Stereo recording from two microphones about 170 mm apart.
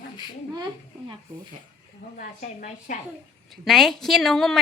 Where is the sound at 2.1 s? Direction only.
50° left (ahead or behind).